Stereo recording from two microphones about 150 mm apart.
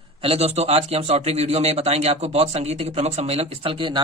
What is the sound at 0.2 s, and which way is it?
A man's voice, 40° right (ahead or behind).